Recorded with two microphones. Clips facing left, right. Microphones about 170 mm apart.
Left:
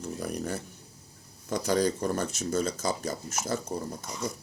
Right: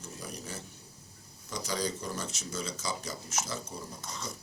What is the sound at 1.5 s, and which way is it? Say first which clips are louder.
Speech: left 8 dB; 55° left (ahead or behind).